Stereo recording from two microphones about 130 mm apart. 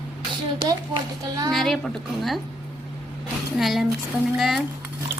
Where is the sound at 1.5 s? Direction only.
Centre (ahead or behind).